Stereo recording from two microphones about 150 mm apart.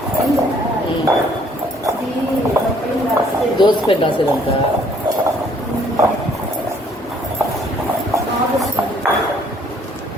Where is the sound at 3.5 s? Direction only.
30° left (ahead or behind).